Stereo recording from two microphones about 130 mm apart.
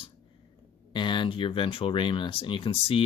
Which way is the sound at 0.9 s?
35° left (ahead or behind).